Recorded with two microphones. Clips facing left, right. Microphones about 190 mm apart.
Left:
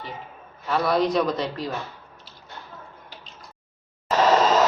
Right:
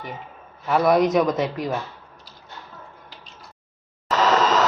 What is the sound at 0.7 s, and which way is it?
Speech, 20° right (ahead or behind).